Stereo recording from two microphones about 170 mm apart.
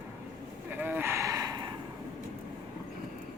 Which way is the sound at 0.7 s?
10° right (ahead or behind).